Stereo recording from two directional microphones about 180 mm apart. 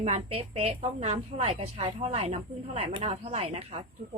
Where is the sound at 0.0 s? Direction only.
35° right (ahead or behind).